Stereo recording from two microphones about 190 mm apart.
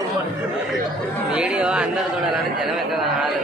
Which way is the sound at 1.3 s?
5° right (ahead or behind).